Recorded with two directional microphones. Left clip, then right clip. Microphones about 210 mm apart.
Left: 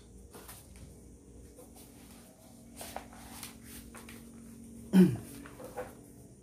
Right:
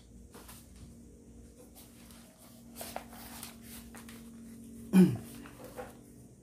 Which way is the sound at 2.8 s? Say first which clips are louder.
Right 1 dB; 40° right (ahead or behind).